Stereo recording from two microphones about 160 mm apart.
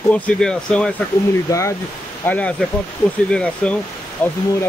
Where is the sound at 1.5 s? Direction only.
20° left (ahead or behind).